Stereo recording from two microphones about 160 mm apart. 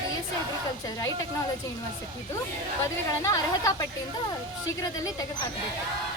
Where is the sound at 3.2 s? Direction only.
20° left (ahead or behind).